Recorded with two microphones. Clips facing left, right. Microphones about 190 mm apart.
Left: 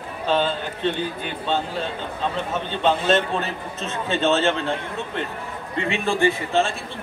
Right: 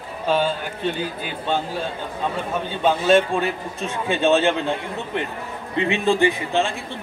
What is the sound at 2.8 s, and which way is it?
A man's voice, 10° right (ahead or behind).